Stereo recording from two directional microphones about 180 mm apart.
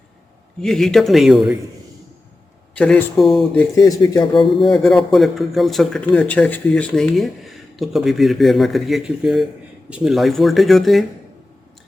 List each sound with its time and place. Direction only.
0.6 s a man's voice: centre (ahead or behind)
2.7 s a man's voice: 5° left (ahead or behind)
3.5 s speech: 15° left (ahead or behind)
4.4 s a man's voice: centre (ahead or behind)